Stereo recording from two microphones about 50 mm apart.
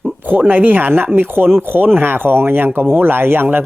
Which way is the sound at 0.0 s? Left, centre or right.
Right.